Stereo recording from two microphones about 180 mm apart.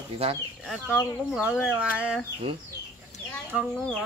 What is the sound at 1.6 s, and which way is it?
Speech, 5° right (ahead or behind).